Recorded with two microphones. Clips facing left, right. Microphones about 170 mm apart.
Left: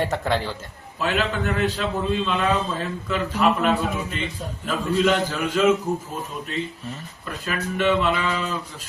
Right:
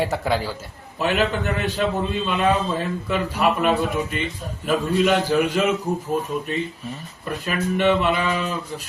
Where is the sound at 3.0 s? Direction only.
15° right (ahead or behind).